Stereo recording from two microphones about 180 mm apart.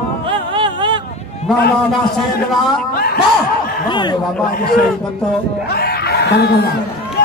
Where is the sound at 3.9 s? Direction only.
25° left (ahead or behind).